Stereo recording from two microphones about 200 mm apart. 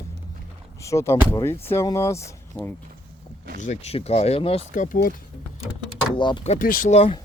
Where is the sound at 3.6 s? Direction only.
35° left (ahead or behind).